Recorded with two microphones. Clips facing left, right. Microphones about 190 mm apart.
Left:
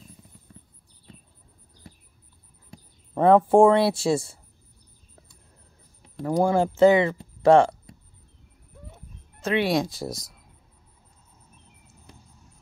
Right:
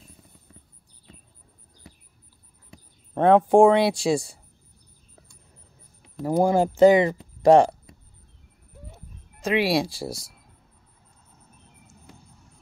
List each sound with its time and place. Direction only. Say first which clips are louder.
3.2 s speech: even; 5° left (ahead or behind)
6.2 s speech: right 1 dB; 15° right (ahead or behind)
8.9 s a sound: right 1 dB; 10° right (ahead or behind)
9.8 s speech: even; 30° right (ahead or behind)